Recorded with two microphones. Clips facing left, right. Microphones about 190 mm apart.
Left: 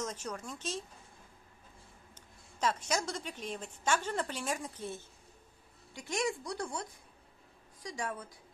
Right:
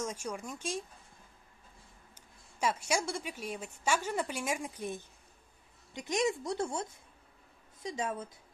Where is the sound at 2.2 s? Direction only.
10° right (ahead or behind).